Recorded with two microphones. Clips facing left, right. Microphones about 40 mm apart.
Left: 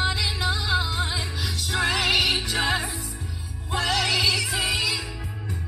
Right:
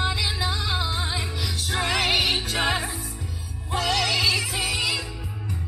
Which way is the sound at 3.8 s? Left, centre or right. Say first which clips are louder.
Even; centre.